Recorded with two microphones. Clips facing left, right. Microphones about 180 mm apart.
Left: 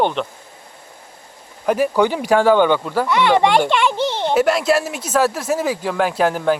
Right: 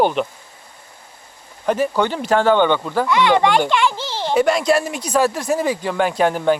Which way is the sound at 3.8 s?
20° left (ahead or behind).